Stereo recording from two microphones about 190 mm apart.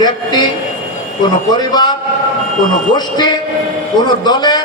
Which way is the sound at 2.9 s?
20° left (ahead or behind).